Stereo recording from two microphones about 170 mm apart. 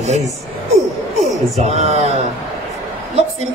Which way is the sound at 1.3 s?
40° right (ahead or behind).